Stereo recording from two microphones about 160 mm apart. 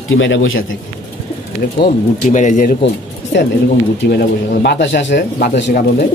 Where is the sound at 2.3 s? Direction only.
50° left (ahead or behind).